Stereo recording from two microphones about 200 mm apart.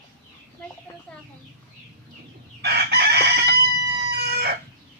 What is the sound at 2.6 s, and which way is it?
Chicken, 55° right (ahead or behind).